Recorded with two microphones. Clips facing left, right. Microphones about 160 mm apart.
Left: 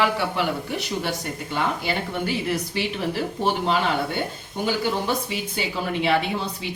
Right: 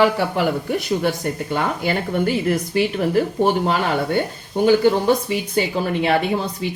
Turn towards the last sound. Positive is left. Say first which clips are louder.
# right 4 dB
turn(degrees=-50)  # may be behind; listen again after turning